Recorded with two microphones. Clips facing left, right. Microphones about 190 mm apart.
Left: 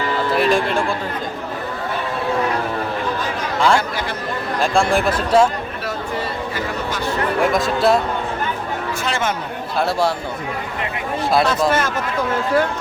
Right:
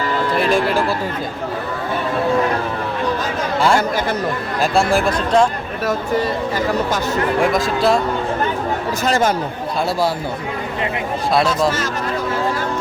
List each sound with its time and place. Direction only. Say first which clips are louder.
0.3 s speech: right 1 dB; centre (ahead or behind)
4.6 s speech: right 1 dB; 5° right (ahead or behind)
7.4 s speech: left 2 dB; centre (ahead or behind)
9.0 s speech: right 6 dB; 40° right (ahead or behind)